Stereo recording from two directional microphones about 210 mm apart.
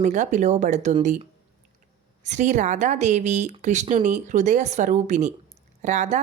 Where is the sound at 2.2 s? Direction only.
35° right (ahead or behind).